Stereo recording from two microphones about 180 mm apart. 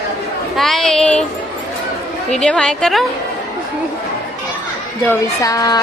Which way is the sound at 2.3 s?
5° left (ahead or behind).